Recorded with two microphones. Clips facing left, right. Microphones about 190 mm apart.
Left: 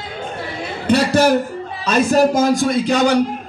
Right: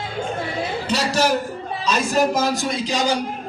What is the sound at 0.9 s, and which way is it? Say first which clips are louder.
A man's voice: left 7 dB; 55° left (ahead or behind).